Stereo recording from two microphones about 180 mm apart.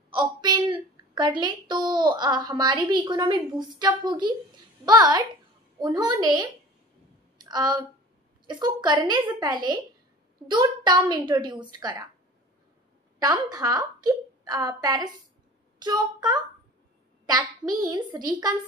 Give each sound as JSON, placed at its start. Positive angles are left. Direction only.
{"t": 0.1, "sound": "a woman's voice", "side_deg": -25}
{"t": 13.2, "sound": "a woman's voice", "side_deg": -20}